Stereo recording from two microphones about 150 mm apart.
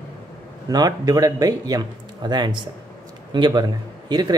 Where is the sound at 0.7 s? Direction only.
25° right (ahead or behind).